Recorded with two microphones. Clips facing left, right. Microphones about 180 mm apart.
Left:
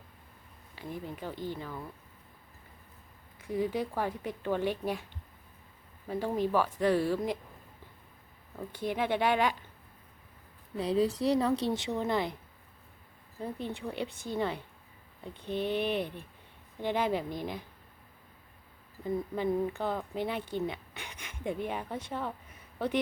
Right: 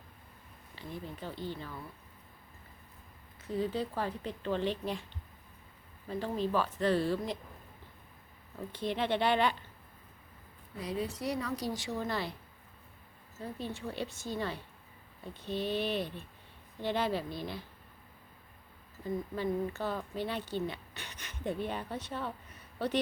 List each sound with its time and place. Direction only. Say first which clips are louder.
0.8 s speech: left 3 dB; 15° left (ahead or behind)
3.4 s speech: left 2 dB; 15° left (ahead or behind)
6.1 s speech: left 3 dB; 10° left (ahead or behind)
8.7 s speech: left 1 dB; 10° left (ahead or behind)
10.8 s speech: left 8 dB; 30° left (ahead or behind)
13.4 s speech: left 3 dB; 20° left (ahead or behind)
19.0 s speech: left 3 dB; 15° left (ahead or behind)